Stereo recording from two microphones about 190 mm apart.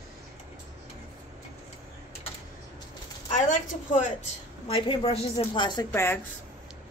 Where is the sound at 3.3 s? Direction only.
40° left (ahead or behind); by 5.9 s 25° left (ahead or behind).